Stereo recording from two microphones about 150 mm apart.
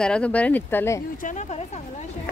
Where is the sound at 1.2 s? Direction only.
55° left (ahead or behind).